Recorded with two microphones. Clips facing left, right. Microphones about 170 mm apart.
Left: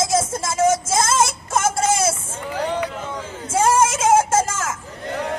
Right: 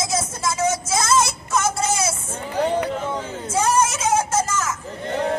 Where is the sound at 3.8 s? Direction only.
50° left (ahead or behind).